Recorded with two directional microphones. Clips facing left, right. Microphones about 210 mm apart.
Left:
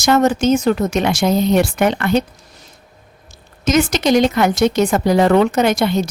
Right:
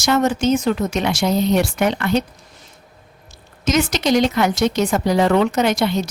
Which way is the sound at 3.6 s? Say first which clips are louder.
Left 3 dB; 50° left (ahead or behind).